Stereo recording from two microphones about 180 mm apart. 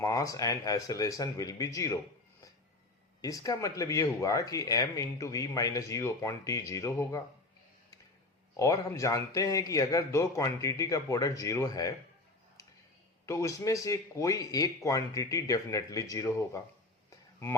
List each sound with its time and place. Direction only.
0.0 s speech: 15° left (ahead or behind)
3.2 s speech: 20° left (ahead or behind)
8.5 s speech: 15° left (ahead or behind)
13.2 s speech: 15° left (ahead or behind)